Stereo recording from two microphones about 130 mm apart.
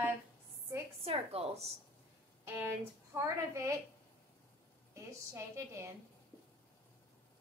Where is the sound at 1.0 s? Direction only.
50° right (ahead or behind).